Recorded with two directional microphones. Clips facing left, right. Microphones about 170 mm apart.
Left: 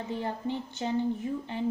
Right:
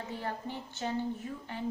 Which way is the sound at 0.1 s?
20° left (ahead or behind).